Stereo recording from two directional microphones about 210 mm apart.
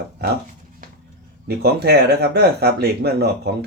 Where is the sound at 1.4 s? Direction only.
50° right (ahead or behind).